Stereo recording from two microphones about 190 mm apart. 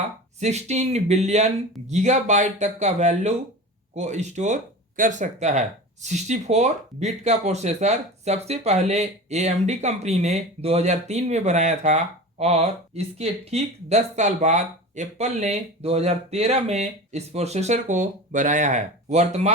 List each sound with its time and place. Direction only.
0.3 s speech: 35° right (ahead or behind)